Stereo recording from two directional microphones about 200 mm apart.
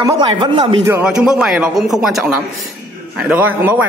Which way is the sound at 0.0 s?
20° right (ahead or behind).